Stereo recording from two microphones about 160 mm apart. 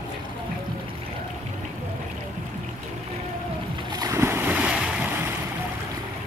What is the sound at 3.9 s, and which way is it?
Boat, 20° right (ahead or behind).